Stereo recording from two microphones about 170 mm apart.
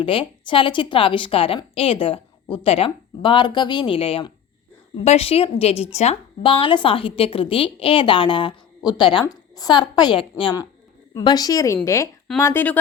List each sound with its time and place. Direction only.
0.0 s a woman's voice: 30° left (ahead or behind); by 12.8 s 10° left (ahead or behind)